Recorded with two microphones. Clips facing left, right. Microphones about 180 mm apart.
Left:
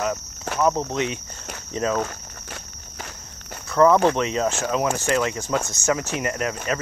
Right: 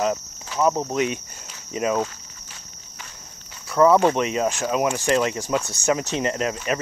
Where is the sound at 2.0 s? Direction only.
60° left (ahead or behind).